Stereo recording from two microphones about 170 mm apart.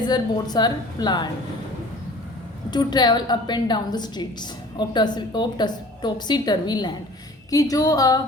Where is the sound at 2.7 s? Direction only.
25° left (ahead or behind).